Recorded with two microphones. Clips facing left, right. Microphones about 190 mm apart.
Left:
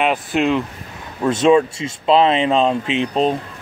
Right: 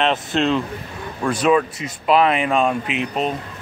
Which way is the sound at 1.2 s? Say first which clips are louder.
Left 4 dB; 25° left (ahead or behind).